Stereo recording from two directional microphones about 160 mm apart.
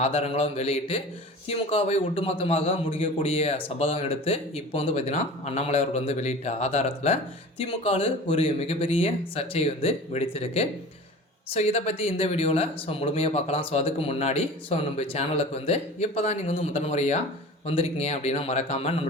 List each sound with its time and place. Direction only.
0.0 s speech: 40° left (ahead or behind)